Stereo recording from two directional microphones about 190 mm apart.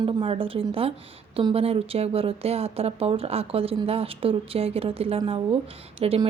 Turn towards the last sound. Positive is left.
turn(degrees=-30)  # may be behind; listen again after turning